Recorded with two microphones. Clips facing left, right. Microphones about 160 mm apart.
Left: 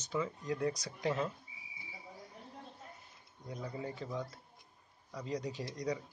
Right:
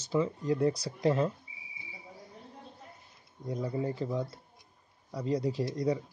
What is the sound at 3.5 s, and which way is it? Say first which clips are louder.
Speech: right 9 dB; 35° right (ahead or behind).